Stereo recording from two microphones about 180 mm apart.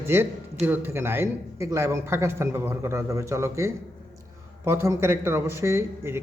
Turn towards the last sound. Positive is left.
turn(degrees=-15)  # may be behind; listen again after turning